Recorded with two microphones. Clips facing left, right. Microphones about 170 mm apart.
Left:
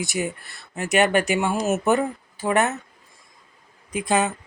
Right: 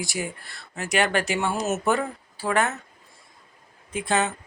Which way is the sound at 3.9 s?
15° left (ahead or behind).